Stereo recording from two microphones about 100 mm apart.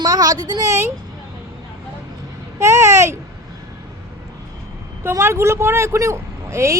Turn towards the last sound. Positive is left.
turn(degrees=-30)  # may be behind; listen again after turning